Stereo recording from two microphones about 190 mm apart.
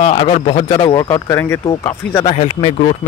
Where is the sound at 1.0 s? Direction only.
15° left (ahead or behind).